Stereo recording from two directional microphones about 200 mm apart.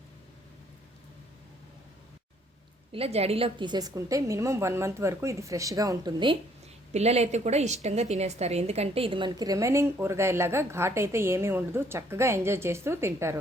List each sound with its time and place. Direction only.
2.9 s a woman's voice: 30° right (ahead or behind)
6.9 s a woman's voice: 30° right (ahead or behind); by 13.4 s 15° right (ahead or behind)